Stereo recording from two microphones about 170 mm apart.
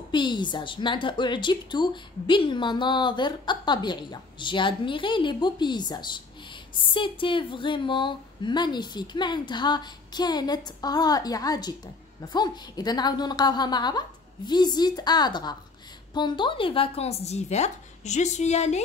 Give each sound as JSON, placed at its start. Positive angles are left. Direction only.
{"t": 0.1, "sound": "a woman's voice", "side_deg": 25}